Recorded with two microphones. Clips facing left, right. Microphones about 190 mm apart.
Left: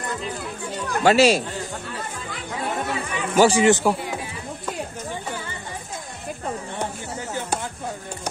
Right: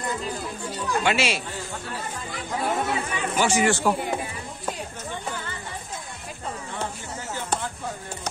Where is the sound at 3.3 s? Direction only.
35° left (ahead or behind).